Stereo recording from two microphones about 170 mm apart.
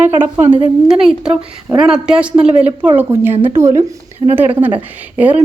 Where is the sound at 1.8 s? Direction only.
5° right (ahead or behind).